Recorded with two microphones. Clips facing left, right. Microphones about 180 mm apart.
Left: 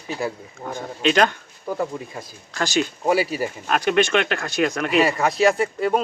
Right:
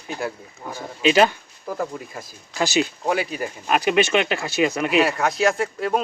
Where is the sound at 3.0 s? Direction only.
5° left (ahead or behind).